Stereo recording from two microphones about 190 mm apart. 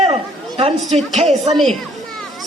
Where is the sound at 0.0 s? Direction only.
30° right (ahead or behind).